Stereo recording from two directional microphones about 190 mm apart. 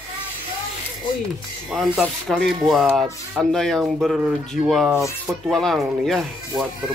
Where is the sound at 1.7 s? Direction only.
Centre (ahead or behind).